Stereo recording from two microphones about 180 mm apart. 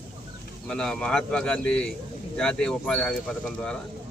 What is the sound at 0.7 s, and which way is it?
A man's voice, 5° left (ahead or behind).